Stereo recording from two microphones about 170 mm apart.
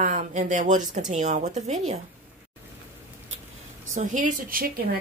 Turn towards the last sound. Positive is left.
turn(degrees=-55)  # may be behind; listen again after turning